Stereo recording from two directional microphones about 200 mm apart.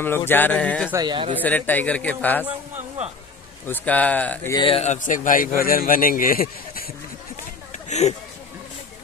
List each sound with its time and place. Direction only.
0.0 s a man's voice: 10° left (ahead or behind)
0.9 s speech: 25° right (ahead or behind)
1.4 s a man's voice: 10° left (ahead or behind)
3.6 s a man's voice: 10° left (ahead or behind)
4.5 s a man's voice: 25° left (ahead or behind); by 6.9 s 45° left (ahead or behind)